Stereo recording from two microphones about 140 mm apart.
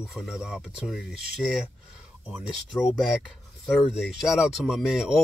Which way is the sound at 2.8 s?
Centre (ahead or behind).